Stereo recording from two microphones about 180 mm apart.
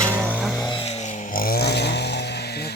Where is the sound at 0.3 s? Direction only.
Centre (ahead or behind).